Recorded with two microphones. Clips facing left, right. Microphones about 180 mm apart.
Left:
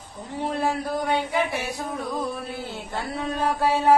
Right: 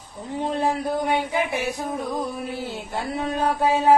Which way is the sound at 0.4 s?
20° right (ahead or behind).